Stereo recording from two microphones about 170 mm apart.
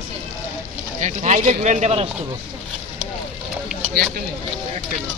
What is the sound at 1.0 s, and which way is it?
Speech, 45° right (ahead or behind).